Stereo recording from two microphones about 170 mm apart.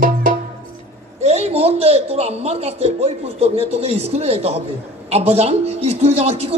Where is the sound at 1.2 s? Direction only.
40° right (ahead or behind).